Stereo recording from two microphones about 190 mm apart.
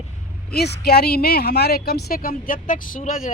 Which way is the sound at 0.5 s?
55° left (ahead or behind).